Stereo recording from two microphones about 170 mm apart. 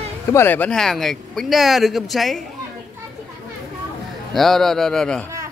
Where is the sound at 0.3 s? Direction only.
15° left (ahead or behind).